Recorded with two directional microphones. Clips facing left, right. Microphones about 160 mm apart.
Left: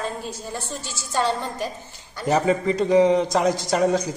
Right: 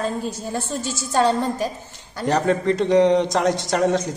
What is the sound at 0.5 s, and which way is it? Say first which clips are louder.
Speech: right 6 dB; 45° right (ahead or behind).